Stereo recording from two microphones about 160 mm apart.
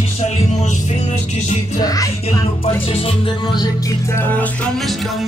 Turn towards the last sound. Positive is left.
turn(degrees=10)  # may be behind; listen again after turning